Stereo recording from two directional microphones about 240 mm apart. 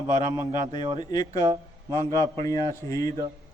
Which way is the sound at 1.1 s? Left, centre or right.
Centre.